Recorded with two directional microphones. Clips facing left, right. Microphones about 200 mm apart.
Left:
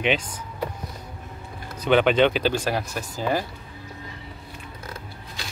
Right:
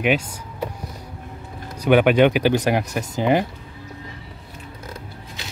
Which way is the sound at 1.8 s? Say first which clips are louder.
Right 3 dB; 10° right (ahead or behind).